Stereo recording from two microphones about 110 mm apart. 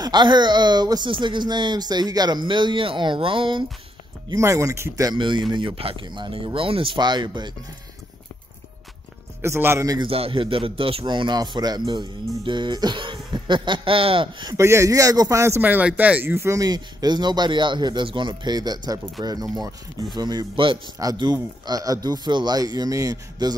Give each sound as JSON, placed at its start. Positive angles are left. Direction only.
{"t": 0.0, "sound": "speech", "side_deg": -40}
{"t": 4.3, "sound": "speech", "side_deg": -25}
{"t": 5.1, "sound": "speech", "side_deg": -45}
{"t": 7.0, "sound": "speech", "side_deg": -40}
{"t": 9.4, "sound": "speech", "side_deg": -20}
{"t": 10.0, "sound": "speech", "side_deg": -60}
{"t": 14.5, "sound": "speech", "side_deg": -25}
{"t": 21.0, "sound": "speech", "side_deg": -35}